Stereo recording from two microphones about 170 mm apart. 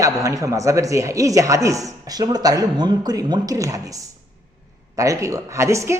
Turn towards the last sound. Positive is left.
turn(degrees=-15)  # may be behind; listen again after turning